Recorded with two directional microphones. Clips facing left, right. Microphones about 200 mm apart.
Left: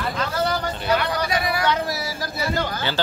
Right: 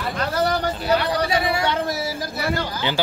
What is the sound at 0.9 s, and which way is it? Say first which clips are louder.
Speech: right 2 dB; 30° right (ahead or behind).